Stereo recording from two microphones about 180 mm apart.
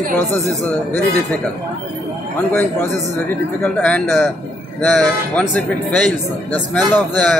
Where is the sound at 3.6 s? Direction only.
5° left (ahead or behind).